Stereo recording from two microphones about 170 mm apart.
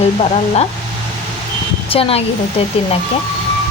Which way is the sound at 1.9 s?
35° left (ahead or behind).